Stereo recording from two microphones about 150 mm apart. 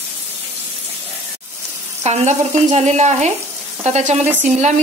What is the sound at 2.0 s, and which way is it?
Frying, 50° right (ahead or behind).